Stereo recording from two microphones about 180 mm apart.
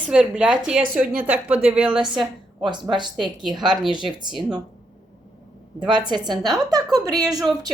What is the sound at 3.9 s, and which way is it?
Speech, 25° right (ahead or behind).